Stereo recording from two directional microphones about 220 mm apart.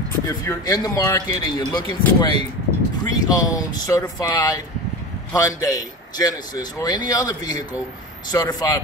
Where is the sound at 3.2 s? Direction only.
15° left (ahead or behind).